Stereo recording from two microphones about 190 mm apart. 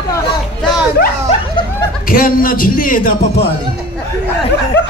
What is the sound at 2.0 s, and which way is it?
Speech, 50° left (ahead or behind).